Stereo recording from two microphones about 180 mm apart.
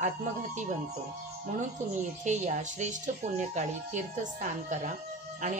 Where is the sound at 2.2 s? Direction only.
40° right (ahead or behind).